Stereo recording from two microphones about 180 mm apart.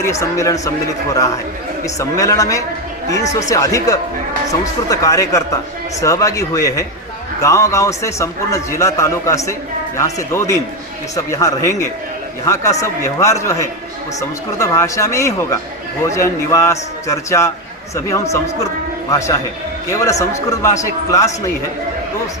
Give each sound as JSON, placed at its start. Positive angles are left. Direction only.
{"t": 0.0, "sound": "a man's voice", "side_deg": 15}